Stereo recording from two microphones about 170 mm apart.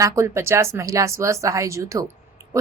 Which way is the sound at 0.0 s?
15° right (ahead or behind).